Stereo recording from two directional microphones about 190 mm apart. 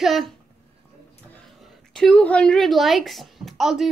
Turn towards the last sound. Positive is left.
turn(degrees=0)  # may be behind; listen again after turning